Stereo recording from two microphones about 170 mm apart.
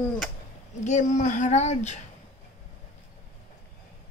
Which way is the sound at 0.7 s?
45° left (ahead or behind).